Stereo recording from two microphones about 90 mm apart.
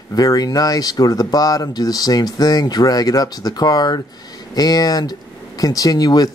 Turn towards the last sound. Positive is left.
turn(degrees=45)  # may be behind; listen again after turning